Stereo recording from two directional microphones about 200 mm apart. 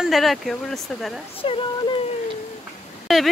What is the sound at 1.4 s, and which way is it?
Speech, 25° left (ahead or behind).